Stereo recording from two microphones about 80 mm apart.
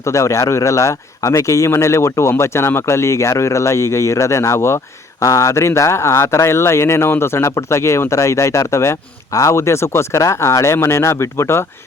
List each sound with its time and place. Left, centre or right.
0.0 s speech: left